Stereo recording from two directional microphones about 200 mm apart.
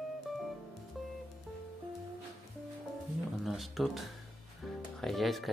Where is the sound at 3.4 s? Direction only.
Centre (ahead or behind).